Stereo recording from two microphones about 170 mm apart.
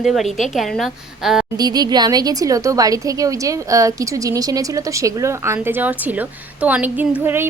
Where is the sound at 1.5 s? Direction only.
25° right (ahead or behind).